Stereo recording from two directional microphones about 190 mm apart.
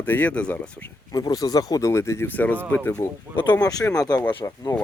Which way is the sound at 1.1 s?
20° left (ahead or behind).